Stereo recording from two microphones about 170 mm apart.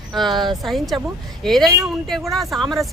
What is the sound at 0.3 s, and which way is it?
Speech, 25° right (ahead or behind).